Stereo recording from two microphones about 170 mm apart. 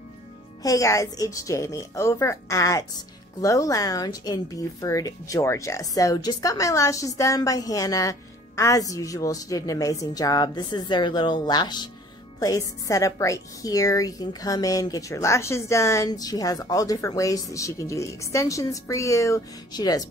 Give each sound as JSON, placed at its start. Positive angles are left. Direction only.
{"t": 0.6, "sound": "speech", "side_deg": 20}